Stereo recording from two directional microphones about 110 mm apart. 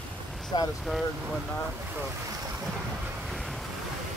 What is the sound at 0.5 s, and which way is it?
Speech, 45° left (ahead or behind).